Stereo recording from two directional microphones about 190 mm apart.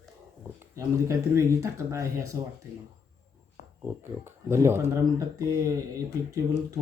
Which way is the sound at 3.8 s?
15° right (ahead or behind).